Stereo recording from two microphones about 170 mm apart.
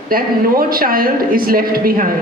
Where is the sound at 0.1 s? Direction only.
60° right (ahead or behind).